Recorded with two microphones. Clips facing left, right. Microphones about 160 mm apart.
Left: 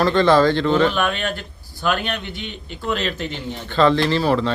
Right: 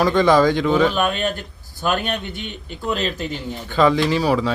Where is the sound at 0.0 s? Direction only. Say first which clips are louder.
Even; 10° right (ahead or behind).